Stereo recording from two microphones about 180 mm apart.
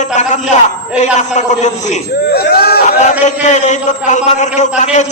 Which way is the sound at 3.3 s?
40° left (ahead or behind).